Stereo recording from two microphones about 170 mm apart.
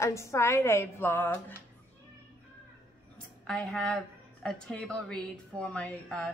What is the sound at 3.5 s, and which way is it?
A woman's voice, 5° left (ahead or behind).